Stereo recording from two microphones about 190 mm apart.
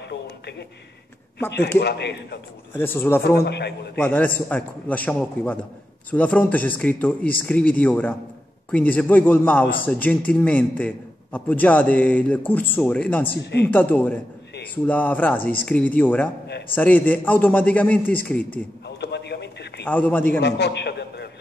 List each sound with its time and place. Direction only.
0.1 s a sound: 60° left (ahead or behind)
1.8 s a man's voice: 65° left (ahead or behind)
2.8 s a man's voice: 10° left (ahead or behind)
3.3 s a man's voice: 60° left (ahead or behind)
4.0 s a man's voice: 10° left (ahead or behind)
13.4 s a man's voice: 60° left (ahead or behind)
13.7 s a man's voice: 10° left (ahead or behind)
18.9 s a sound: 60° left (ahead or behind)
19.9 s a man's voice: 10° left (ahead or behind)
20.3 s a man's voice: 65° left (ahead or behind)